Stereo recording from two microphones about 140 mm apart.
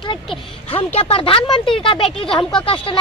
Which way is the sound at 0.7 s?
45° left (ahead or behind).